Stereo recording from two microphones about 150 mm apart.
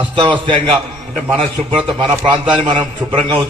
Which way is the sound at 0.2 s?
30° right (ahead or behind).